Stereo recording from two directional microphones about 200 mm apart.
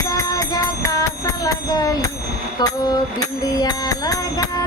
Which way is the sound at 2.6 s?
20° left (ahead or behind).